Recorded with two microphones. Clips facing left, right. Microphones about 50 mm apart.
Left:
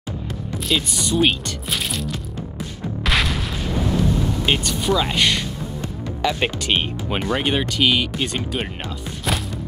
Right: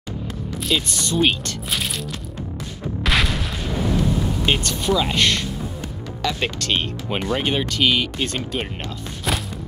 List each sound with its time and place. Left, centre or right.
0.7 s speech: centre
3.0 s a sound: centre
4.5 s speech: centre
7.1 s speech: centre
9.3 s music: centre